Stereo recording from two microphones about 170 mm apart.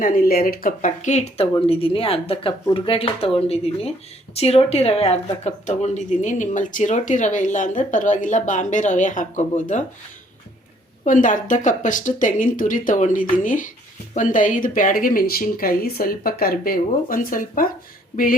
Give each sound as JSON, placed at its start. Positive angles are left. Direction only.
{"t": 0.0, "sound": "speech", "side_deg": 55}
{"t": 11.0, "sound": "speech", "side_deg": 50}